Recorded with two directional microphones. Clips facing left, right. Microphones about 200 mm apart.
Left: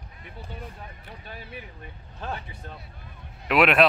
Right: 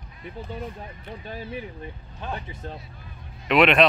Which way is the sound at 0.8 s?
25° right (ahead or behind).